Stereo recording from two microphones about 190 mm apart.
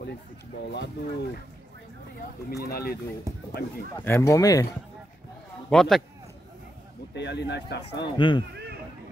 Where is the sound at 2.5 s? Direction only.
55° left (ahead or behind).